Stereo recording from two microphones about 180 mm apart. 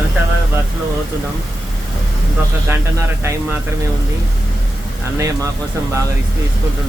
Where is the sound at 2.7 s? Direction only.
15° right (ahead or behind).